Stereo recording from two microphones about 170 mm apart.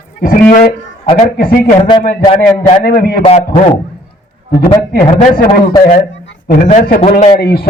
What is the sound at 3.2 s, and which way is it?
Speech, 35° left (ahead or behind).